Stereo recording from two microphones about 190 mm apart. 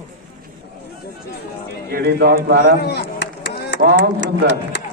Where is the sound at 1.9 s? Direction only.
60° right (ahead or behind).